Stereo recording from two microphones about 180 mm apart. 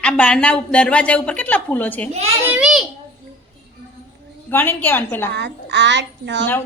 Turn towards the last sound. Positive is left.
turn(degrees=-75)  # may be behind; listen again after turning